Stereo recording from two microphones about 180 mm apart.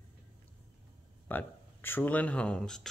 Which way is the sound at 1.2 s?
10° left (ahead or behind).